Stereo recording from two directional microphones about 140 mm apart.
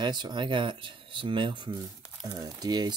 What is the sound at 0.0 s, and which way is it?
Speech, 30° right (ahead or behind).